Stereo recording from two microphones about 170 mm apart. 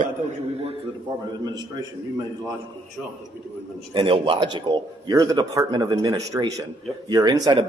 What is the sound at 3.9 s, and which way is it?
A man's voice, 30° right (ahead or behind).